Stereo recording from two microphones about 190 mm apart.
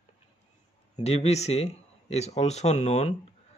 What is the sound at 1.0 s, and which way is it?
Speech, 35° left (ahead or behind).